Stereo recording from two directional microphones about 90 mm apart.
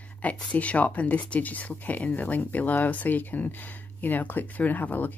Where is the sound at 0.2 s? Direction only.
15° left (ahead or behind).